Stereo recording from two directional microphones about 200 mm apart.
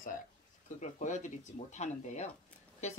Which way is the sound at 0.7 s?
35° left (ahead or behind).